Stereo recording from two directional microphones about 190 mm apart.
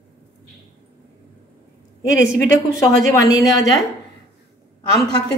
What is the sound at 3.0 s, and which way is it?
Speech, 20° left (ahead or behind).